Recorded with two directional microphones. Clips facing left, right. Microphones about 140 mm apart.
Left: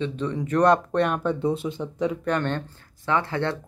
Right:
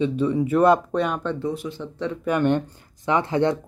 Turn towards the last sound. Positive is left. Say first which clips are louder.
# right 4 dB
turn(degrees=-20)  # may be behind; listen again after turning